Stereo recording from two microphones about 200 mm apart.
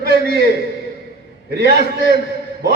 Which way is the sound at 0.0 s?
50° right (ahead or behind).